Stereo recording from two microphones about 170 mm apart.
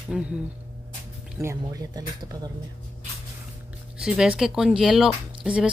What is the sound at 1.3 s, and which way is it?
Speech, 20° right (ahead or behind).